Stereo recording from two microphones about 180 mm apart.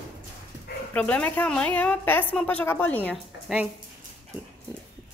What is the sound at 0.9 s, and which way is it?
A woman's voice, 10° left (ahead or behind).